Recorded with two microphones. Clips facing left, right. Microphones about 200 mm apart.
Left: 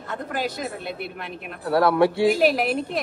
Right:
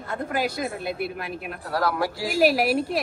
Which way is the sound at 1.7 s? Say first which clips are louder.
Left 7 dB; 25° left (ahead or behind).